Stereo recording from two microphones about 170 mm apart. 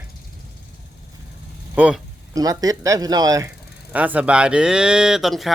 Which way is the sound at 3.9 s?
10° right (ahead or behind).